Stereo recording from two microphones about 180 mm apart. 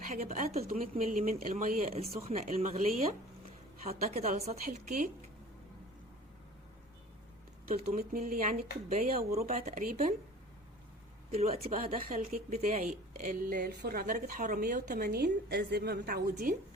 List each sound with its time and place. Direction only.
0.1 s a woman's voice: 40° right (ahead or behind)
2.1 s a woman's voice: 35° right (ahead or behind)
7.7 s speech: 50° right (ahead or behind)
9.4 s speech: 40° right (ahead or behind)
11.3 s a woman's voice: 35° right (ahead or behind)
11.8 s speech: 50° right (ahead or behind)
12.5 s a woman's voice: 35° right (ahead or behind)
12.8 s a woman's voice: 50° right (ahead or behind)